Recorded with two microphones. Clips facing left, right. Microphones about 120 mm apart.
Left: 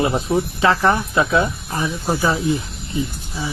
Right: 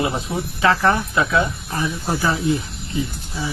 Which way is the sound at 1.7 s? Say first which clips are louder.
Left 1 dB; 15° left (ahead or behind).